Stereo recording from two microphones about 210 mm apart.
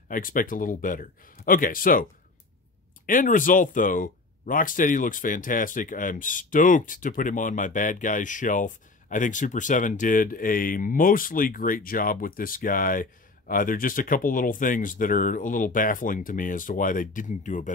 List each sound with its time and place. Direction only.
0.1 s speech: 40° left (ahead or behind)
3.1 s speech: 40° left (ahead or behind)